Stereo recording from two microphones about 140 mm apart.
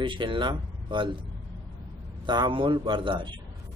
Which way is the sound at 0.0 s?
35° right (ahead or behind).